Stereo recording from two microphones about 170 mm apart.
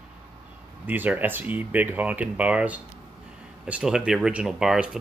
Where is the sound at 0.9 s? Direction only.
10° right (ahead or behind).